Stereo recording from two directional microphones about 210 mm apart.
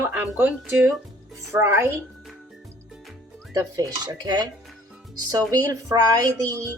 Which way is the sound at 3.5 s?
15° right (ahead or behind).